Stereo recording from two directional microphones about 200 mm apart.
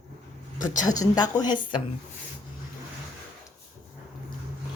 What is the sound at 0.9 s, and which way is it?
Speech, 20° left (ahead or behind).